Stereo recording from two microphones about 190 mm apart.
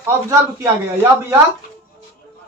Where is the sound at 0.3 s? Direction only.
15° right (ahead or behind).